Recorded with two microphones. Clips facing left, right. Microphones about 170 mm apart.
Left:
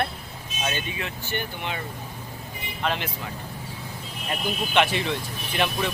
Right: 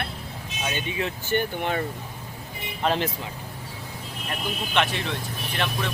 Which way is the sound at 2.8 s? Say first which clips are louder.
Right 4 dB; 35° right (ahead or behind).